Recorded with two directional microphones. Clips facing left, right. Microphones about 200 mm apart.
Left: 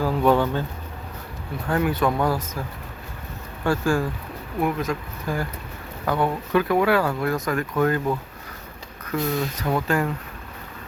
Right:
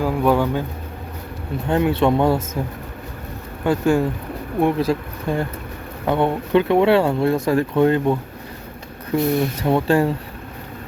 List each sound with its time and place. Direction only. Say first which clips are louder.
0.0 s speech: right 2 dB; 10° right (ahead or behind)
1.6 s speech: right 4 dB; 25° right (ahead or behind)